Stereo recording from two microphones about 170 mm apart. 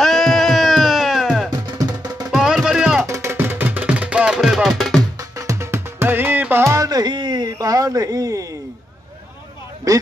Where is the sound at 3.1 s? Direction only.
15° right (ahead or behind).